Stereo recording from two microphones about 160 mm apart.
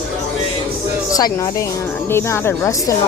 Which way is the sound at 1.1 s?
25° left (ahead or behind).